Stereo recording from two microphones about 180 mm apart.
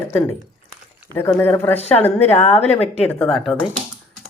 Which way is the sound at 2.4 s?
35° left (ahead or behind).